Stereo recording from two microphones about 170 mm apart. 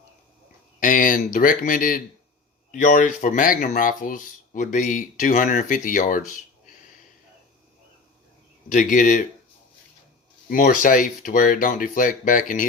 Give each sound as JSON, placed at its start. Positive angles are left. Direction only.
{"t": 0.8, "sound": "speech", "side_deg": 50}
{"t": 8.7, "sound": "speech", "side_deg": 50}
{"t": 10.5, "sound": "speech", "side_deg": 55}